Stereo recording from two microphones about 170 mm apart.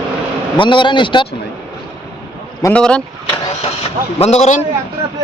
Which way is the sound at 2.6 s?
5° left (ahead or behind).